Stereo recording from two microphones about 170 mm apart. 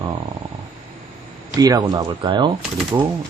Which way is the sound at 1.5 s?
20° right (ahead or behind).